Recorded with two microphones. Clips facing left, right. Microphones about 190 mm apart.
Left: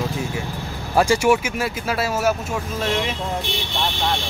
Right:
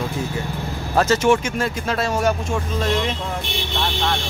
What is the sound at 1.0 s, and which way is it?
Speech, 10° left (ahead or behind).